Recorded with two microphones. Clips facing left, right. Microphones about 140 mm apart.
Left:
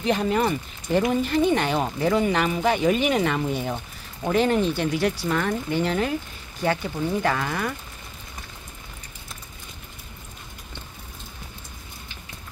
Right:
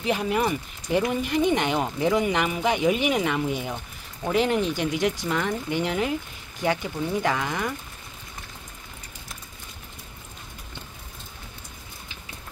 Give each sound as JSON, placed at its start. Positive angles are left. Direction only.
{"t": 0.0, "sound": "speech", "side_deg": -10}